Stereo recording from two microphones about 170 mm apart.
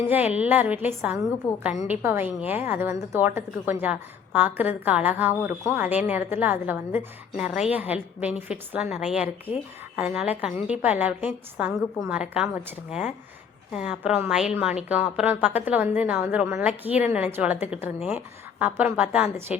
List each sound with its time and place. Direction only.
0.3 s a woman's voice: 10° right (ahead or behind)
1.4 s a woman's voice: 15° left (ahead or behind)
1.9 s a woman's voice: 15° right (ahead or behind)